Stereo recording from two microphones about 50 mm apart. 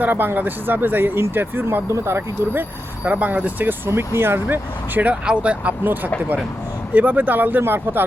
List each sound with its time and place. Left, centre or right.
0.0 s speech: right
3.0 s speech: right
3.8 s speech: right
5.2 s speech: right
5.8 s speech: right